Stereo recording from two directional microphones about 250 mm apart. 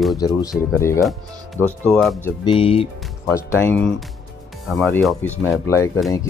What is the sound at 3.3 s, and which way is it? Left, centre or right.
Speech, centre.